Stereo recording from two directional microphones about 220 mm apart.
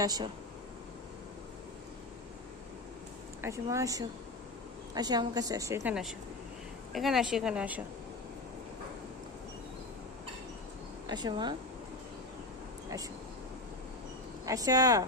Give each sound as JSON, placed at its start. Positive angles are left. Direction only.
{"t": 0.0, "sound": "a woman's voice", "side_deg": -20}
{"t": 3.4, "sound": "a woman's voice", "side_deg": -15}
{"t": 11.0, "sound": "speech", "side_deg": -20}
{"t": 14.4, "sound": "a woman's voice", "side_deg": -15}